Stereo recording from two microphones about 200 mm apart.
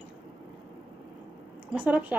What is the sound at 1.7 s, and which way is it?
Speech, 10° right (ahead or behind).